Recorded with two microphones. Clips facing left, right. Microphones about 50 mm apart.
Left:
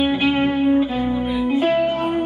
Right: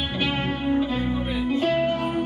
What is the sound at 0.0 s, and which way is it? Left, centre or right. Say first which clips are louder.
Music: left 8 dB; left.